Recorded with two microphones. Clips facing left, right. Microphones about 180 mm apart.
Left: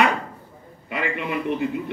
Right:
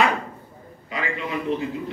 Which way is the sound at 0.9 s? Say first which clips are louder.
Left 2 dB; 60° left (ahead or behind).